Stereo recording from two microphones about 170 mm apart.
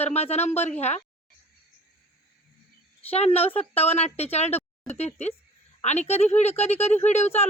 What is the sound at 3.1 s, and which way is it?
Speech, 35° left (ahead or behind).